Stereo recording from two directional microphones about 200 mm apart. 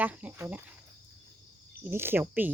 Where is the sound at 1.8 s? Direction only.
10° right (ahead or behind).